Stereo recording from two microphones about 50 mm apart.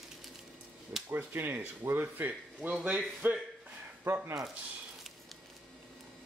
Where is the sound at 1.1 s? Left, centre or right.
Right.